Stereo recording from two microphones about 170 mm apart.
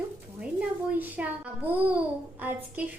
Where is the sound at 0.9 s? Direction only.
10° right (ahead or behind).